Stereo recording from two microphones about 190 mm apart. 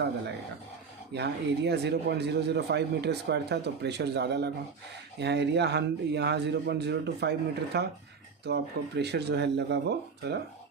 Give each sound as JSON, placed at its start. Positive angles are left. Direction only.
{"t": 1.1, "sound": "speech", "side_deg": -60}